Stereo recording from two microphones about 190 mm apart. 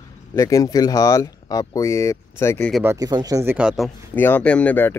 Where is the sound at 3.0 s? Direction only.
20° right (ahead or behind).